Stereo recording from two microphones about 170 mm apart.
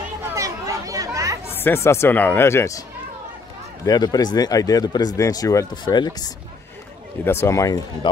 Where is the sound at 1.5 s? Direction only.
15° left (ahead or behind).